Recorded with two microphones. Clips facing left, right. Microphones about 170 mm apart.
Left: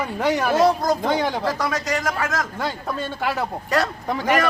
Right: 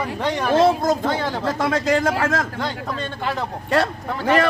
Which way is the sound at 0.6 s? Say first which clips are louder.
Right 3 dB; 25° right (ahead or behind).